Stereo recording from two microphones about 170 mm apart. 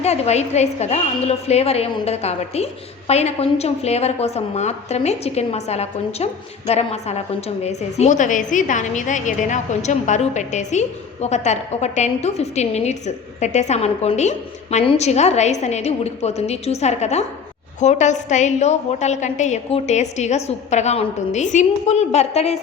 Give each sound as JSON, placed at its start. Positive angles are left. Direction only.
{"t": 0.0, "sound": "a woman's voice", "side_deg": 40}